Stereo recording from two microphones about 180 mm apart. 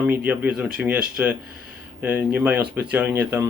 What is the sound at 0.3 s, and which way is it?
Speech, 5° right (ahead or behind).